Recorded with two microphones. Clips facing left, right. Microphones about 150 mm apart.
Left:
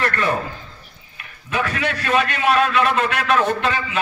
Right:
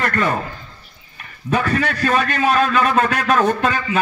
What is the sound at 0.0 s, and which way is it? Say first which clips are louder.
Speech: right 2 dB; 45° right (ahead or behind).